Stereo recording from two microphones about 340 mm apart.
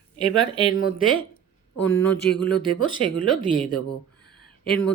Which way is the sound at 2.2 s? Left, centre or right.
Left.